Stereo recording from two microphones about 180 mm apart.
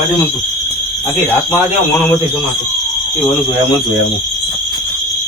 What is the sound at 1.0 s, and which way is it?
Speech, 15° left (ahead or behind).